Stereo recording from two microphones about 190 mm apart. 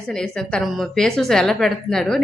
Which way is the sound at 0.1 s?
5° left (ahead or behind).